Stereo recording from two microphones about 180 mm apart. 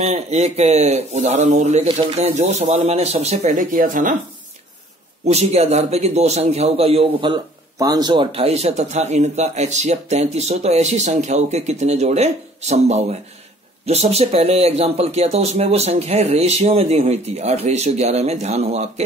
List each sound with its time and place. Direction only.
0.0 s a man's voice: 35° right (ahead or behind)
5.2 s a man's voice: 35° right (ahead or behind)